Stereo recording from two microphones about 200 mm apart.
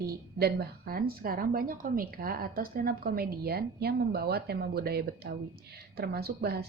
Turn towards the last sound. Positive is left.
turn(degrees=-50)  # may be behind; listen again after turning